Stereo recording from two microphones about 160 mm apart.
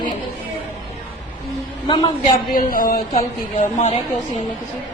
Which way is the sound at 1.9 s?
30° left (ahead or behind).